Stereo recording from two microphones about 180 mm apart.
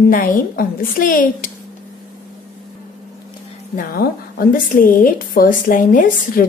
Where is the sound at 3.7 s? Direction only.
55° left (ahead or behind).